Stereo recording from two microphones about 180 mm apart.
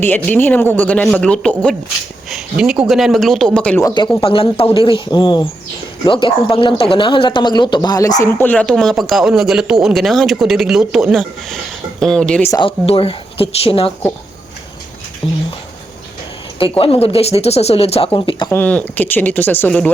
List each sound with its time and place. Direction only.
0.0 s speech: 10° left (ahead or behind)
4.2 s speech: 30° left (ahead or behind); by 12.5 s 5° left (ahead or behind)
12.5 s speech: 25° left (ahead or behind)
15.2 s speech: 30° left (ahead or behind)
16.6 s speech: 30° left (ahead or behind)
18.5 s speech: 10° left (ahead or behind)